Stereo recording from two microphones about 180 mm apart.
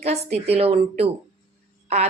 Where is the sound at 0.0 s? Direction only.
35° right (ahead or behind).